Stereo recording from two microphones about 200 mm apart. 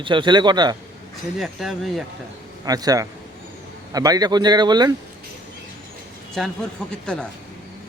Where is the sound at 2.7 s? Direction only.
20° right (ahead or behind).